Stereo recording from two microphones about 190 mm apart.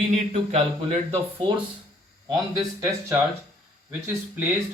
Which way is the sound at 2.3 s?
15° right (ahead or behind).